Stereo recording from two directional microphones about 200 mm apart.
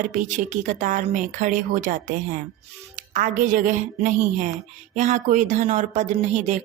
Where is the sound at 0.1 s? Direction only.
40° right (ahead or behind).